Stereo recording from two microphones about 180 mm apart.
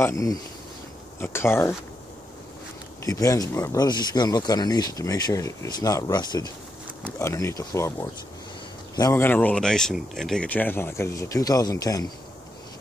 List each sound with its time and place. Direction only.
0.0 s speech: 20° left (ahead or behind)
3.1 s speech: 20° left (ahead or behind)